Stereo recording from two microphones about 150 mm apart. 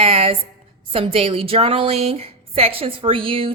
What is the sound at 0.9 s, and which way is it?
A woman's voice, 40° right (ahead or behind).